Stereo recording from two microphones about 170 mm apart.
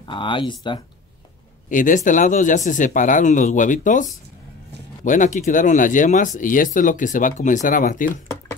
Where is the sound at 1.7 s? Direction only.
50° left (ahead or behind).